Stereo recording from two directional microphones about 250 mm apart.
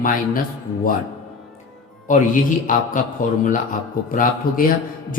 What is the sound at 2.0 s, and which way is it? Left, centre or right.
Speech, left.